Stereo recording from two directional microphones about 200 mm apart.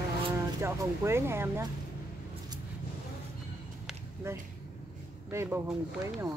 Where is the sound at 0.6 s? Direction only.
15° right (ahead or behind).